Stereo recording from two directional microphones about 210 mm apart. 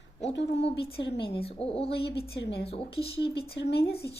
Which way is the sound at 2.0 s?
50° left (ahead or behind).